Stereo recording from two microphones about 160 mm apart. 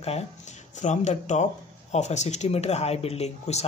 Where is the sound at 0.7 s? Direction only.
50° left (ahead or behind).